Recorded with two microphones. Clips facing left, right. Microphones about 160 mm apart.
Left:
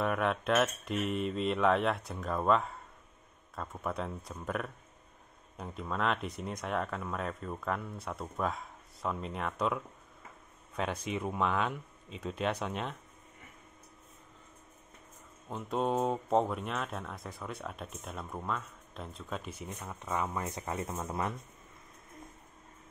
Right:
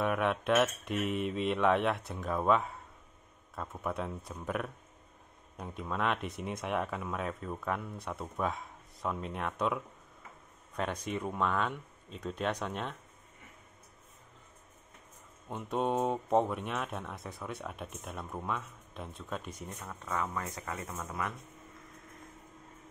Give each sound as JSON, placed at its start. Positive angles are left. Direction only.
{"t": 0.0, "sound": "speech", "side_deg": 0}
{"t": 15.5, "sound": "speech", "side_deg": 0}
{"t": 19.8, "sound": "speech", "side_deg": 15}